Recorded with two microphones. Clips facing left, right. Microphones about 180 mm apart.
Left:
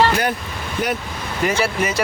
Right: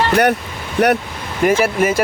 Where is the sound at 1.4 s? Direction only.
50° right (ahead or behind).